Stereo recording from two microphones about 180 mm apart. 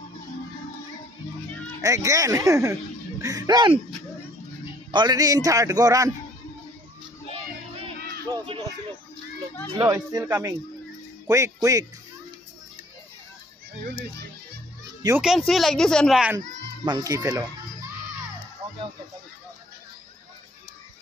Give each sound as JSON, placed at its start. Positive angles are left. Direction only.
{"t": 1.8, "sound": "speech", "side_deg": -20}
{"t": 4.9, "sound": "a man's voice", "side_deg": -20}
{"t": 7.3, "sound": "music", "side_deg": -30}
{"t": 9.7, "sound": "a man's voice", "side_deg": -25}
{"t": 15.2, "sound": "speech", "side_deg": 0}
{"t": 16.3, "sound": "a child's voice", "side_deg": -20}